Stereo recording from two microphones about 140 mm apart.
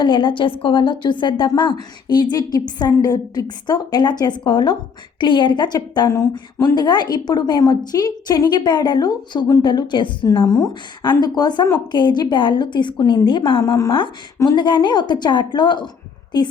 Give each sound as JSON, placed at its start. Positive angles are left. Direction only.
{"t": 0.0, "sound": "a woman's voice", "side_deg": 35}
{"t": 13.7, "sound": "a woman's voice", "side_deg": 25}